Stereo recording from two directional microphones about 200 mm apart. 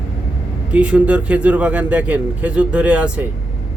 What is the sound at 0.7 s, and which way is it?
A man's voice, 5° right (ahead or behind).